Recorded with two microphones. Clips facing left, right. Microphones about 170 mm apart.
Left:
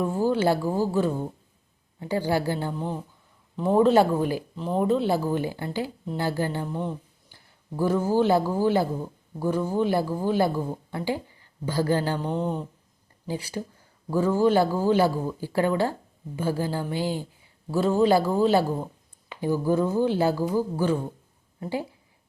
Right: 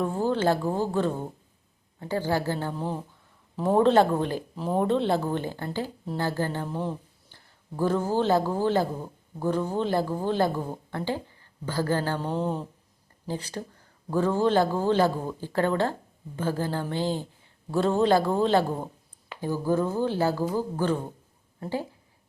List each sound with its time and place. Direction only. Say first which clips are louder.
0.0 s speech: left 2 dB; 10° left (ahead or behind)
2.7 s a man's voice: even; centre (ahead or behind)
4.5 s speech: even; 5° right (ahead or behind); by 6.7 s 15° left (ahead or behind)
7.8 s a woman's voice: left 2 dB; 10° left (ahead or behind)
12.2 s a man's voice: left 1 dB; centre (ahead or behind)
13.2 s a man's voice: left 2 dB; 10° left (ahead or behind)